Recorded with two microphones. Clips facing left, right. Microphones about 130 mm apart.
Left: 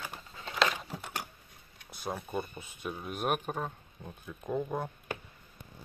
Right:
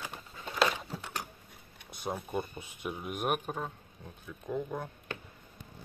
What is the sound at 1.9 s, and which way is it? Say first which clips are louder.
Speech: right 1 dB; 20° right (ahead or behind).